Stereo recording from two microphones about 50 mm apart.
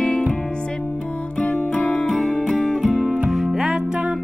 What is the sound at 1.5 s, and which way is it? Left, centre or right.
Music, left.